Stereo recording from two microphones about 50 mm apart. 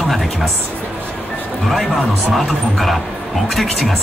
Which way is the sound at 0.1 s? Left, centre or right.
Centre.